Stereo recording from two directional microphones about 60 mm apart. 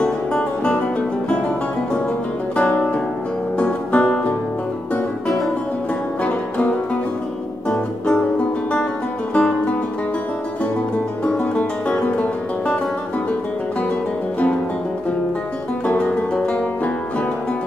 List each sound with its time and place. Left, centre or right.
0.0 s music: centre
2.5 s music: left
9.3 s music: left
11.2 s music: centre
16.0 s music: left